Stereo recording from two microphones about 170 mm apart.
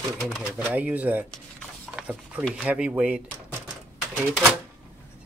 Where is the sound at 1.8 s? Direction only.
5° right (ahead or behind).